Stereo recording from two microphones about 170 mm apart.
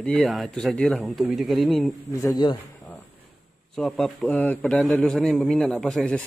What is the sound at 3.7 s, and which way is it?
A man's voice, centre (ahead or behind).